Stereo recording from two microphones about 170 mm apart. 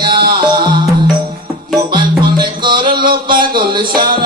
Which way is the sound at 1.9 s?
25° right (ahead or behind).